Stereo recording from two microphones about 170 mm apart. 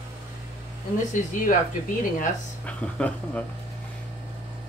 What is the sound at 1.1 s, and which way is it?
Speech, 50° left (ahead or behind).